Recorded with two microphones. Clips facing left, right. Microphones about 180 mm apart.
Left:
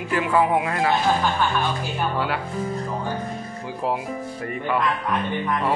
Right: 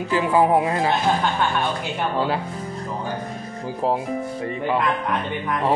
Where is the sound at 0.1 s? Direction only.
30° right (ahead or behind).